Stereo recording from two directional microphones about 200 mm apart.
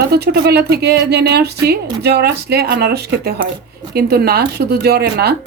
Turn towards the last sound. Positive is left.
turn(degrees=-50)  # may be behind; listen again after turning